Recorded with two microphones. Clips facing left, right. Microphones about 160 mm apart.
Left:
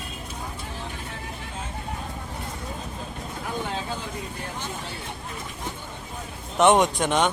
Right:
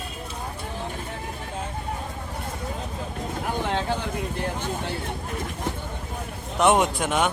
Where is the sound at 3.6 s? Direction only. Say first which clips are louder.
Right 5 dB; 70° right (ahead or behind).